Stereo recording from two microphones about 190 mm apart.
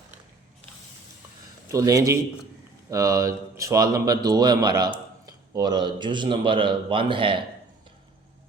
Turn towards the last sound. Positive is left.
turn(degrees=-25)  # may be behind; listen again after turning